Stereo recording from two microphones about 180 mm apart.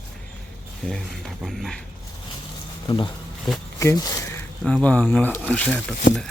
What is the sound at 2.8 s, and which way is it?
Speech, 25° left (ahead or behind).